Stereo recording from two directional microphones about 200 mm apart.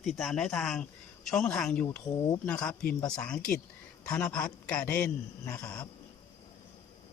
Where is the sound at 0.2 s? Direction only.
Centre (ahead or behind).